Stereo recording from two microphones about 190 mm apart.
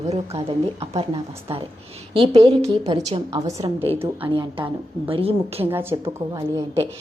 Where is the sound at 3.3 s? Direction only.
15° right (ahead or behind).